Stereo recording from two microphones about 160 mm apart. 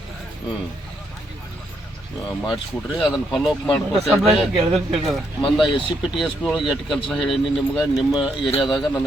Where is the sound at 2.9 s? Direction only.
Centre (ahead or behind).